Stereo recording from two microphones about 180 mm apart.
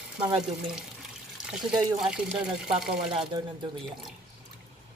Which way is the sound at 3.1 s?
30° right (ahead or behind).